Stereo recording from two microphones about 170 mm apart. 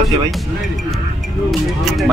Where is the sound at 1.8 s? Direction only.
Centre (ahead or behind).